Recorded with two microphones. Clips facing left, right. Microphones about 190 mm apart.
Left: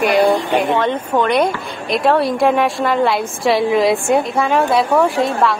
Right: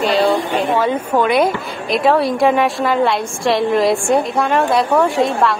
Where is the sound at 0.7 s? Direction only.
5° right (ahead or behind).